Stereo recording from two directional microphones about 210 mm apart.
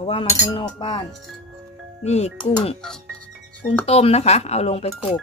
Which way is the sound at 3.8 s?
30° left (ahead or behind).